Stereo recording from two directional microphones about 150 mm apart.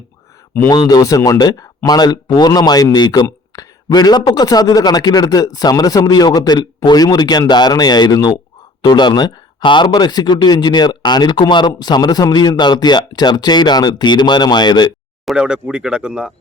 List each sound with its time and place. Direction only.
0.9 s speech: 25° left (ahead or behind)
15.3 s speech: 5° right (ahead or behind)